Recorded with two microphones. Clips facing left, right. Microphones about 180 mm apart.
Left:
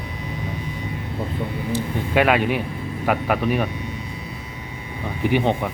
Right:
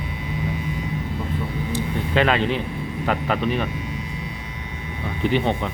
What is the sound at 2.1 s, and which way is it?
Speech, 10° left (ahead or behind).